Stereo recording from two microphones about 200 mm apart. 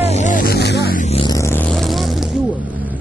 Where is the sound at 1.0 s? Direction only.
30° left (ahead or behind).